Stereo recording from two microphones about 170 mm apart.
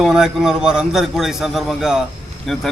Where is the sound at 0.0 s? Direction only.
5° right (ahead or behind).